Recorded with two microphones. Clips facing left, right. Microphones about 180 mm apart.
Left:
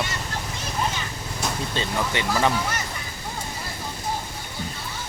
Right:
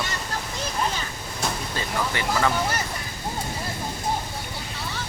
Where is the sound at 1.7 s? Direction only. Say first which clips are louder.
Left 2 dB; 20° left (ahead or behind).